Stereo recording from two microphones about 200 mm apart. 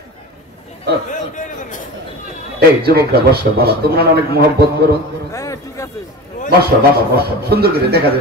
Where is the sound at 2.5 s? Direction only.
50° right (ahead or behind).